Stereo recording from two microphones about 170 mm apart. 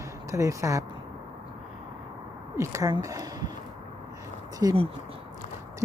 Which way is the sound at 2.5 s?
15° right (ahead or behind).